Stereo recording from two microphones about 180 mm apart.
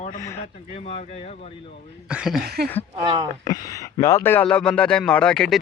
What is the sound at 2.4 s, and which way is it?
Speech, 60° right (ahead or behind).